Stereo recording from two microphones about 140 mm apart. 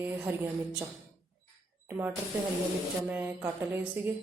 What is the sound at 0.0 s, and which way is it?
Speech, 15° right (ahead or behind).